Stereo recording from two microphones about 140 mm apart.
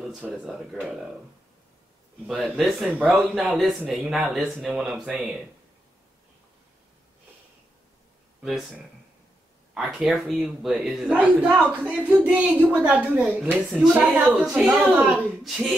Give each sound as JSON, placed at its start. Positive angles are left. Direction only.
{"t": 0.2, "sound": "speech", "side_deg": -5}
{"t": 2.2, "sound": "speech", "side_deg": 0}
{"t": 8.4, "sound": "speech", "side_deg": -5}